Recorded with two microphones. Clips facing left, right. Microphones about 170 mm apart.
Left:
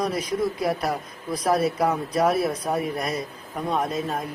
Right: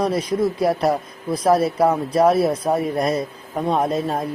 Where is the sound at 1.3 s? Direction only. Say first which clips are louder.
Right 5 dB; 30° right (ahead or behind).